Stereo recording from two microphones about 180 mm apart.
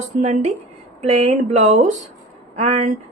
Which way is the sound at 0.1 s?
40° right (ahead or behind).